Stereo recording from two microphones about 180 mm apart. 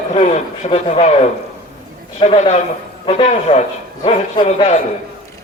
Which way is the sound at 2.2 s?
40° left (ahead or behind).